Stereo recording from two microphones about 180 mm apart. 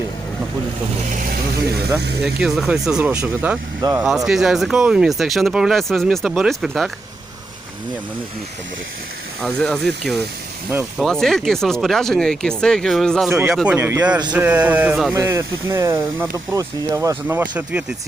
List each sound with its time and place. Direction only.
2.2 s speech: 5° right (ahead or behind)
3.8 s speech: 20° right (ahead or behind)
4.3 s speech: centre (ahead or behind)
9.4 s speech: 5° left (ahead or behind)
13.3 s speech: 15° right (ahead or behind)
15.1 s speech: 15° right (ahead or behind)